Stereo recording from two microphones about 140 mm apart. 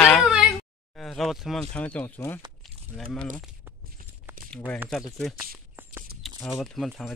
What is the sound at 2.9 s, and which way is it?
Speech, 5° left (ahead or behind).